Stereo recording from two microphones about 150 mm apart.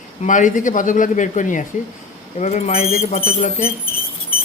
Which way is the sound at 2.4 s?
45° left (ahead or behind).